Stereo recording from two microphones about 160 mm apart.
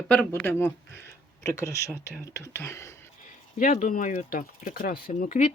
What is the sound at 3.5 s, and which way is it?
Speech, 55° left (ahead or behind).